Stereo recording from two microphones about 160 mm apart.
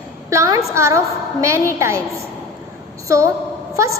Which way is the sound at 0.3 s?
20° right (ahead or behind).